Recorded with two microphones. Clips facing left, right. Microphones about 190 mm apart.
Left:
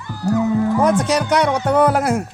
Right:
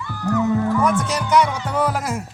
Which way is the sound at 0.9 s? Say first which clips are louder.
Left 4 dB; 75° left (ahead or behind).